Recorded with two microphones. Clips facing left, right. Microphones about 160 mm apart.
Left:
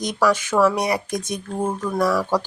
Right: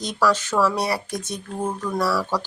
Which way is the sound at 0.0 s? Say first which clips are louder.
Left 2 dB; 15° left (ahead or behind).